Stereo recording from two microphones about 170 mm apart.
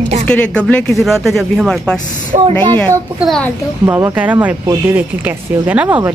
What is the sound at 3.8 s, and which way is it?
Speech, 10° right (ahead or behind).